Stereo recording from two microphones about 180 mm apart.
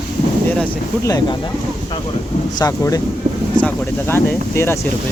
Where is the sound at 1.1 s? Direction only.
20° left (ahead or behind).